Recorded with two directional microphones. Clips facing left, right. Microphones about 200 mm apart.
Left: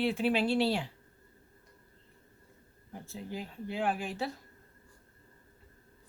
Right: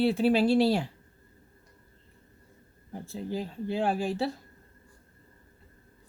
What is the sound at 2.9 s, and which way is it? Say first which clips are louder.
Speech: right 6 dB; 35° right (ahead or behind).